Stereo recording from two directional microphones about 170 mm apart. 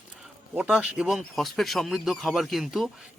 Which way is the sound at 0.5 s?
5° right (ahead or behind).